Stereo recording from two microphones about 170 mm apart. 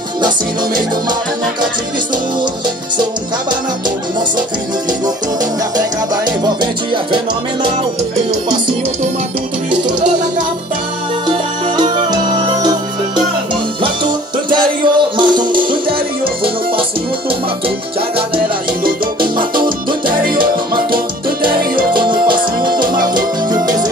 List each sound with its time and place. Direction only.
5.8 s music: 25° right (ahead or behind)
11.2 s music: 25° right (ahead or behind)
19.6 s salsa music: 30° right (ahead or behind)
20.2 s music: 60° right (ahead or behind)
23.5 s music: 25° right (ahead or behind)